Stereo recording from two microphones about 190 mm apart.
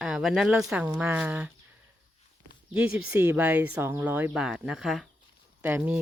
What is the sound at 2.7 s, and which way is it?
Speech, 5° right (ahead or behind).